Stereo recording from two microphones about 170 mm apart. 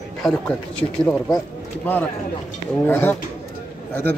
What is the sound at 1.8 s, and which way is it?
A man's voice, 10° left (ahead or behind).